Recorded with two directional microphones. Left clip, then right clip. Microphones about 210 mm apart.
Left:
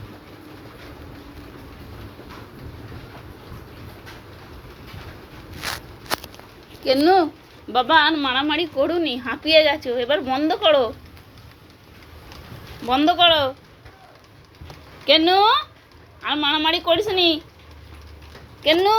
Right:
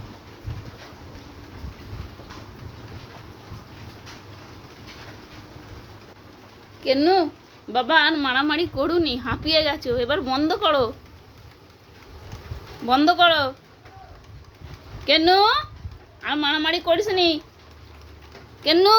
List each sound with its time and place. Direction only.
6.8 s a woman's voice: 15° right (ahead or behind)
12.9 s a woman's voice: 25° right (ahead or behind)
15.0 s a woman's voice: 20° right (ahead or behind)
18.6 s a woman's voice: 25° right (ahead or behind)